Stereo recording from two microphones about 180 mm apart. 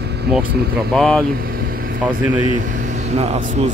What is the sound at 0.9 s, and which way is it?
Speech, centre (ahead or behind).